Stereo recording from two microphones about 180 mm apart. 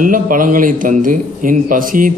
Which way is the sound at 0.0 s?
50° right (ahead or behind).